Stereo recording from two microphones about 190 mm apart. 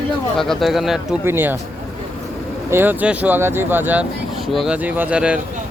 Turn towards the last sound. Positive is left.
turn(degrees=-5)  # may be behind; listen again after turning